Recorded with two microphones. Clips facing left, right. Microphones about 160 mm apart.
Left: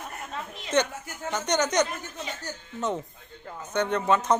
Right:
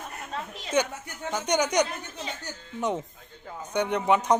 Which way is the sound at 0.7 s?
10° right (ahead or behind).